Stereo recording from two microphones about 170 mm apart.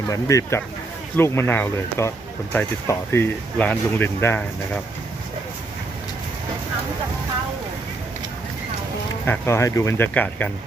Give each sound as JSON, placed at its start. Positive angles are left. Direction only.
{"t": 0.1, "sound": "speech", "side_deg": 20}
{"t": 9.2, "sound": "speech", "side_deg": 15}